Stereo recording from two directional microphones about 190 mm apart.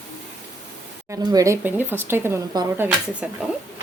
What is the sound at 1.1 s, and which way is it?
Speech, 20° right (ahead or behind).